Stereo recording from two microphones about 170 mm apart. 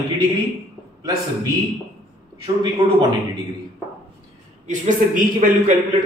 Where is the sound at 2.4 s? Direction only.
25° right (ahead or behind).